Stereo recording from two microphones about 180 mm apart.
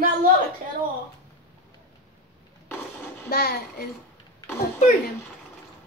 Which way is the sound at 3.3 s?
60° left (ahead or behind).